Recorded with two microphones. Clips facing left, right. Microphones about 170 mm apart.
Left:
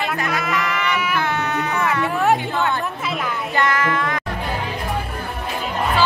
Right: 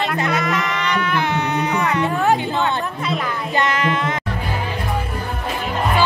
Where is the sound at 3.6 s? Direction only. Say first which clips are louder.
Even; 20° right (ahead or behind).